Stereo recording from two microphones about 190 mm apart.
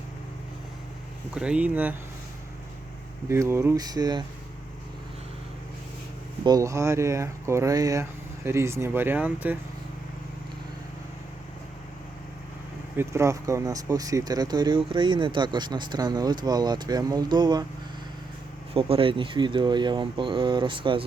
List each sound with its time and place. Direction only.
1.3 s speech: 5° right (ahead or behind)
3.2 s speech: 15° right (ahead or behind)
6.4 s speech: 20° right (ahead or behind)
13.0 s speech: 15° right (ahead or behind)
18.7 s speech: 30° right (ahead or behind)